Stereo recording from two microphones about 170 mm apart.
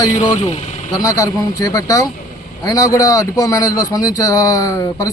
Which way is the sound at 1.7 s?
20° left (ahead or behind).